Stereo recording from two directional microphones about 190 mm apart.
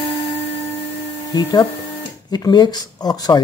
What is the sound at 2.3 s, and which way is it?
Speech, 20° left (ahead or behind).